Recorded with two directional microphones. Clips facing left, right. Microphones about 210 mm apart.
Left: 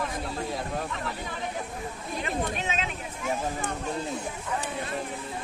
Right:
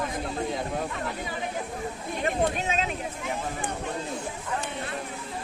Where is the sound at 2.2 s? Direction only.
40° right (ahead or behind).